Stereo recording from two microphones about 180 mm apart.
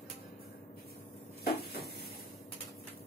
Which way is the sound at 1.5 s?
60° left (ahead or behind).